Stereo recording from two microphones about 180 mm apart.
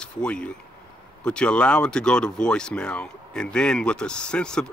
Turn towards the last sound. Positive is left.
turn(degrees=5)  # may be behind; listen again after turning